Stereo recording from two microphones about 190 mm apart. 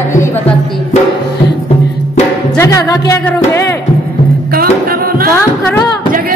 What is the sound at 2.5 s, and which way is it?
Music, 15° left (ahead or behind).